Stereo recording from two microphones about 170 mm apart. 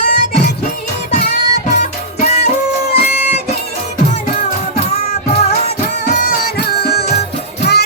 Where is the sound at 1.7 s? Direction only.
45° left (ahead or behind).